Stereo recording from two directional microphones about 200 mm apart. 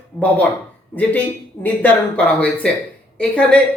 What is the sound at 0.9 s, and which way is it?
Speech, 10° left (ahead or behind).